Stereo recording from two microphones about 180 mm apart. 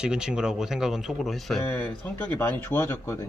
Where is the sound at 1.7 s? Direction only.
10° left (ahead or behind).